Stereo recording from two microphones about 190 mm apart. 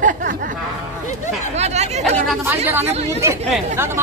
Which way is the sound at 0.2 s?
55° right (ahead or behind).